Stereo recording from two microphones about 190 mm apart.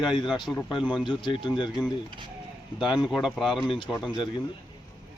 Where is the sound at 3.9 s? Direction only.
Centre (ahead or behind).